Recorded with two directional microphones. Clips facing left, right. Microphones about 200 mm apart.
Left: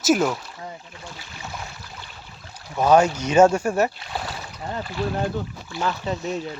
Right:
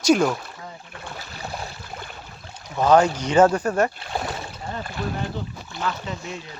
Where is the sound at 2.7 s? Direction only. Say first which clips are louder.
Even; 10° left (ahead or behind).